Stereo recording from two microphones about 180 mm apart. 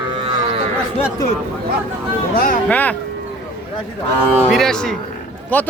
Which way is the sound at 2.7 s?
10° left (ahead or behind).